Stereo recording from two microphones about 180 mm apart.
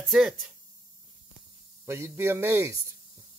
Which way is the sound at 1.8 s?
15° right (ahead or behind).